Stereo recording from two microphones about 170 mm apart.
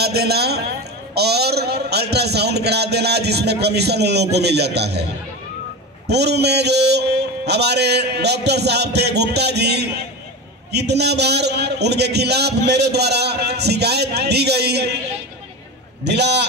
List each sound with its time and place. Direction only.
0.0 s a man's voice: 70° right (ahead or behind)
6.0 s a man's voice: 75° right (ahead or behind)
16.0 s a man's voice: 80° right